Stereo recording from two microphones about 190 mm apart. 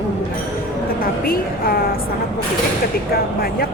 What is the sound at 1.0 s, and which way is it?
Speech, 50° left (ahead or behind).